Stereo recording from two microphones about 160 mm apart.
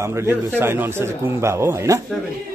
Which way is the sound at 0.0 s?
15° right (ahead or behind).